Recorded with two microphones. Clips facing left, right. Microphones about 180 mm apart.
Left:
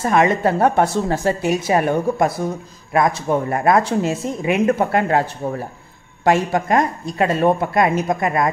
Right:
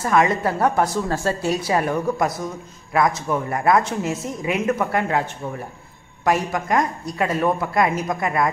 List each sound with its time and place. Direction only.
0.0 s a woman's voice: 25° left (ahead or behind)